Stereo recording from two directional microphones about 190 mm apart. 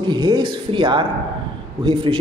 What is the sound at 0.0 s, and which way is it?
A man's voice, 25° right (ahead or behind).